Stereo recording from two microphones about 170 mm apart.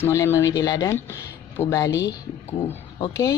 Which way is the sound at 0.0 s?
15° left (ahead or behind).